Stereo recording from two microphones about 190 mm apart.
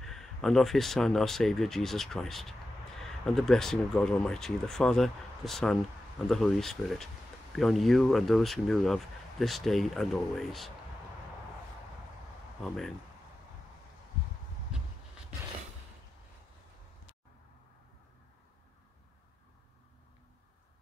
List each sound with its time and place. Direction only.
0.0 s speech: centre (ahead or behind)
12.6 s speech: centre (ahead or behind)